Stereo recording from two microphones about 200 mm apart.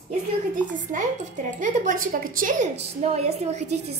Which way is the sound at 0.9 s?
40° right (ahead or behind).